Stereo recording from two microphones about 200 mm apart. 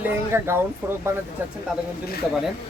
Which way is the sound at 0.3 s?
10° right (ahead or behind).